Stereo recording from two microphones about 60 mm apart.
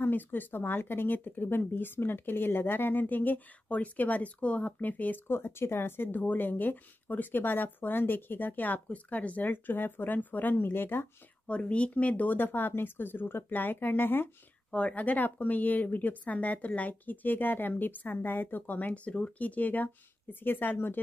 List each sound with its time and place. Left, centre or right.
0.0 s speech: left
5.3 s speech: left
11.4 s speech: centre; by 14.3 s left
14.7 s speech: left